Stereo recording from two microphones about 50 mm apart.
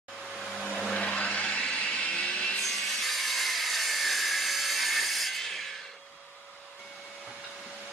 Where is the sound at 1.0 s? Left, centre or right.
Left.